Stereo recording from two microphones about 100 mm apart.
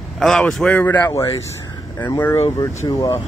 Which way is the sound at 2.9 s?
40° left (ahead or behind).